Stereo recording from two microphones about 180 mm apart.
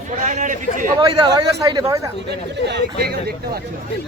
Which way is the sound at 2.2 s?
65° right (ahead or behind).